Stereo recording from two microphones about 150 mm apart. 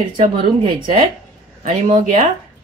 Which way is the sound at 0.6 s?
35° right (ahead or behind).